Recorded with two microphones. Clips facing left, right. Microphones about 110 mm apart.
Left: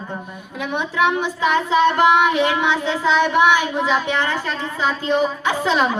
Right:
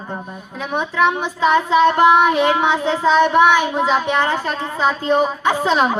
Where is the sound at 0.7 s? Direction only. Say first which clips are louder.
Right 2 dB; 45° right (ahead or behind).